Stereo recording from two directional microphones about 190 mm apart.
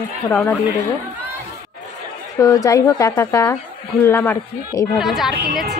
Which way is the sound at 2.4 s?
20° left (ahead or behind).